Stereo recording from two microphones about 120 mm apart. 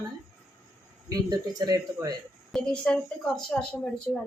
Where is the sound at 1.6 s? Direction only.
35° right (ahead or behind).